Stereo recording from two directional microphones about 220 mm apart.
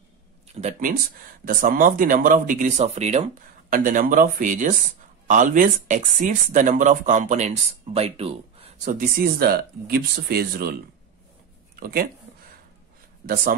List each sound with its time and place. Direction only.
0.6 s speech: 35° right (ahead or behind)
8.9 s speech: 40° right (ahead or behind)
11.8 s speech: 40° right (ahead or behind)
13.3 s speech: 40° right (ahead or behind)